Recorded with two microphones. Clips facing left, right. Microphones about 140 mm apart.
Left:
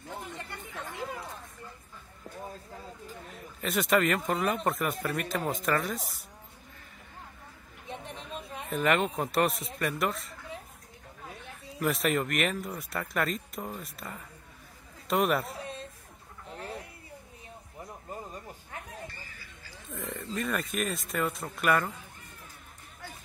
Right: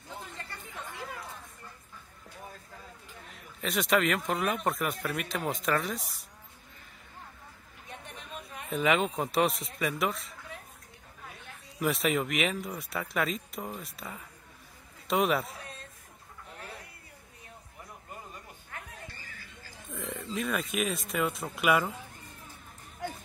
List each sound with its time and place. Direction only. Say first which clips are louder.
0.4 s chatter: left 2 dB; 20° left (ahead or behind)
3.6 s speech: left 1 dB; centre (ahead or behind)
7.9 s chatter: left 4 dB; 30° left (ahead or behind)
8.6 s speech: even; centre (ahead or behind)
11.8 s speech: even; centre (ahead or behind)
16.4 s fowl: left 6 dB; 30° left (ahead or behind)
18.1 s music: left 5 dB; 30° left (ahead or behind)
19.9 s speech: even; centre (ahead or behind)